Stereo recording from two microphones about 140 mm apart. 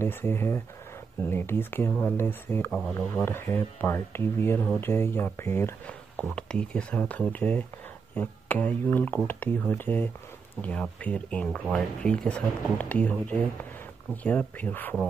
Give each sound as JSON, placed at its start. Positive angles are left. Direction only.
{"t": 0.0, "sound": "speech", "side_deg": 15}
{"t": 6.3, "sound": "speech", "side_deg": 5}